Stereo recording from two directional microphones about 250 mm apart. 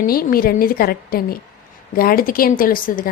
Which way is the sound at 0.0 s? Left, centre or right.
Left.